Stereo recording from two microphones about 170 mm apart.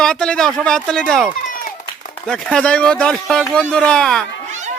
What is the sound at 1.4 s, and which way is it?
Run, 55° left (ahead or behind).